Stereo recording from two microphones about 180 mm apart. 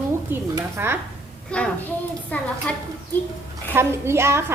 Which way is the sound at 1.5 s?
5° left (ahead or behind).